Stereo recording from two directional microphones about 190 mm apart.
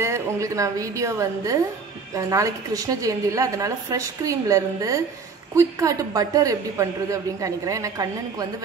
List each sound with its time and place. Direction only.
0.0 s a woman's voice: 15° right (ahead or behind)